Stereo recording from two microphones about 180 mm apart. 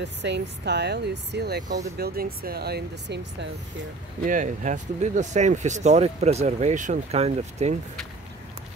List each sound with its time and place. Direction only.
0.0 s speech: 75° right (ahead or behind)
4.2 s speech: 45° right (ahead or behind)